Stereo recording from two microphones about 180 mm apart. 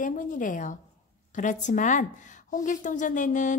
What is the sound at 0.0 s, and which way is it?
Speech, 45° left (ahead or behind).